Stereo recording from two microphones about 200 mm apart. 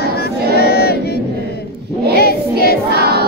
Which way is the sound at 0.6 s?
50° left (ahead or behind).